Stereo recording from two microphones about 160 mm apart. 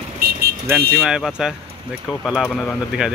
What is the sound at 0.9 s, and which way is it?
Speech, centre (ahead or behind).